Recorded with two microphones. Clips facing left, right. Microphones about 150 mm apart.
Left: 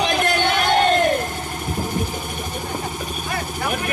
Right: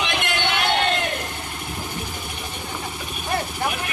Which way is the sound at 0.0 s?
40° left (ahead or behind).